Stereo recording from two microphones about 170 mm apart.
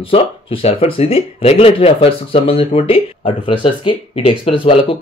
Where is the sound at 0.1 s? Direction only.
35° left (ahead or behind).